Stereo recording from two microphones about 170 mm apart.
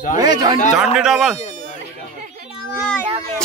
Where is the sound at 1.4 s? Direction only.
45° left (ahead or behind).